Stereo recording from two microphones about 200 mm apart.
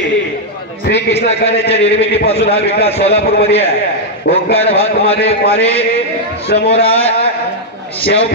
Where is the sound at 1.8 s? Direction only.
60° left (ahead or behind).